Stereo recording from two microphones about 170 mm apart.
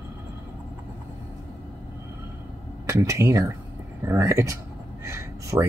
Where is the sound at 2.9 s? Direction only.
15° right (ahead or behind).